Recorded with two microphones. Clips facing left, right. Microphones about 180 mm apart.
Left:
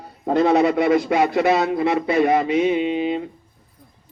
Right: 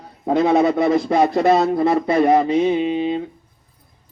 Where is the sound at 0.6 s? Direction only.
35° right (ahead or behind).